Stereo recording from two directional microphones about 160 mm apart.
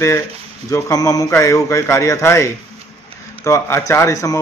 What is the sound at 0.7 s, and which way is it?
A man's voice, 20° left (ahead or behind).